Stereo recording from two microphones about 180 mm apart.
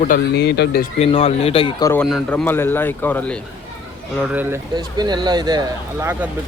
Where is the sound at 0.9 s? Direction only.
35° left (ahead or behind).